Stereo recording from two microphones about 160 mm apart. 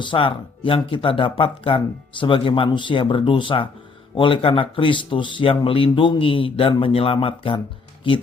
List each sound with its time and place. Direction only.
0.0 s speech: 30° left (ahead or behind)